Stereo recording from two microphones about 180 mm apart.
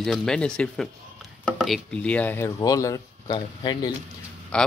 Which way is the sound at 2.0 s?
10° left (ahead or behind).